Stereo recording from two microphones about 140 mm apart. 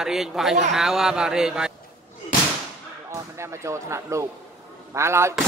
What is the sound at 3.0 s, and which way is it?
Speech, 20° right (ahead or behind).